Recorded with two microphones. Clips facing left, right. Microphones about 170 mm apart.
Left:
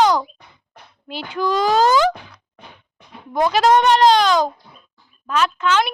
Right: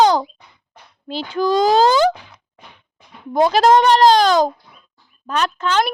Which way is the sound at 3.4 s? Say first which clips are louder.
Right 2 dB; 35° right (ahead or behind).